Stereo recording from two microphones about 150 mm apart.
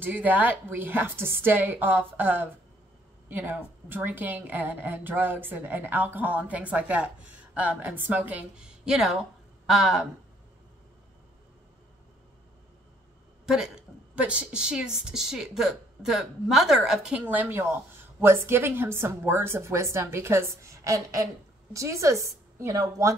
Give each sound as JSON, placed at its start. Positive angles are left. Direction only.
{"t": 0.0, "sound": "a woman's voice", "side_deg": -10}
{"t": 13.5, "sound": "a woman's voice", "side_deg": -5}